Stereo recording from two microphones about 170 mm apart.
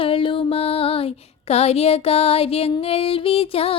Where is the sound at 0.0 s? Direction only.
30° left (ahead or behind).